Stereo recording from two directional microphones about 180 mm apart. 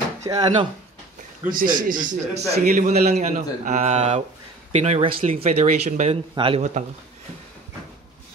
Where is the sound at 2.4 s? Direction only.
60° right (ahead or behind); by 6.1 s 45° right (ahead or behind).